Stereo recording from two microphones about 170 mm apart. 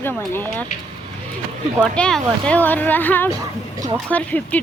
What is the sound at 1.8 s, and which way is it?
Speech, 5° left (ahead or behind).